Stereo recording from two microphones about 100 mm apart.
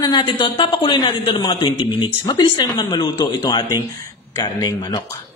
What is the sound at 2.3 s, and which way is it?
A woman's voice, 45° left (ahead or behind).